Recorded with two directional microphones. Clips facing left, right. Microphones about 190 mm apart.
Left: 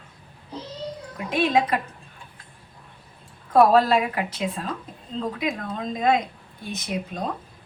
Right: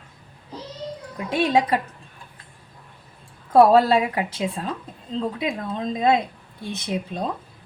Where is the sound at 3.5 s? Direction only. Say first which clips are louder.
Right 2 dB; 30° right (ahead or behind).